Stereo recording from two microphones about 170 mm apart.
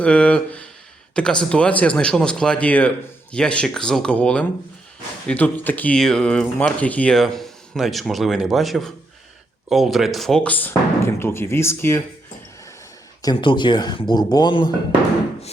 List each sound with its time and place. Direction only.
0.0 s a sound: 5° left (ahead or behind)
1.1 s speech: 5° left (ahead or behind)
13.2 s speech: 30° left (ahead or behind)